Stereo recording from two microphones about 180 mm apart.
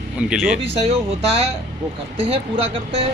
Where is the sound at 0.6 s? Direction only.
35° right (ahead or behind).